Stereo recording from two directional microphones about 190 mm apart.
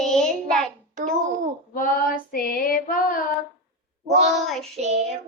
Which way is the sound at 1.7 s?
50° left (ahead or behind).